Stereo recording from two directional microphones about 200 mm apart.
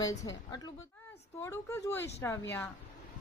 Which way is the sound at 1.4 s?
15° left (ahead or behind).